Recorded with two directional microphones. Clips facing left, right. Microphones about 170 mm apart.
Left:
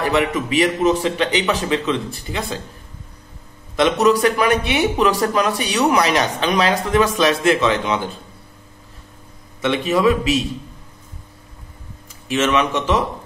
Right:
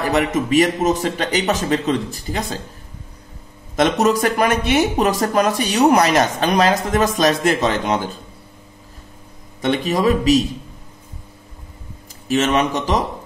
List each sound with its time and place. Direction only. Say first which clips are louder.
0.1 s speech: right 6 dB; 45° right (ahead or behind)
3.7 s speech: left 1 dB; 45° right (ahead or behind)
9.6 s a man's voice: left 1 dB; 40° right (ahead or behind)
12.3 s a man's voice: right 1 dB; 40° right (ahead or behind)